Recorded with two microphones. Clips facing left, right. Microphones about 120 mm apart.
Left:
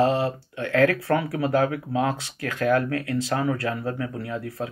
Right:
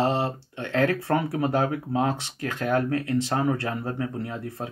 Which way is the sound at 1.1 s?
35° right (ahead or behind).